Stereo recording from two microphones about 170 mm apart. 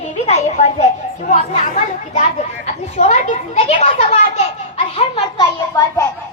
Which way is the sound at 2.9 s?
45° left (ahead or behind).